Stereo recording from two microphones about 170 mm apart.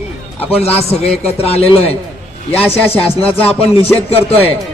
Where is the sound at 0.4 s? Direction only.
35° left (ahead or behind).